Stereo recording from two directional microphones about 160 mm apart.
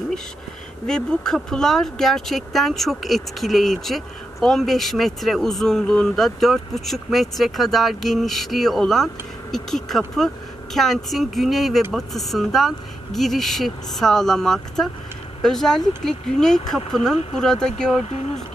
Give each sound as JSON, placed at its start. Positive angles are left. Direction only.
{"t": 0.8, "sound": "speech", "side_deg": 5}
{"t": 18.0, "sound": "speech", "side_deg": 45}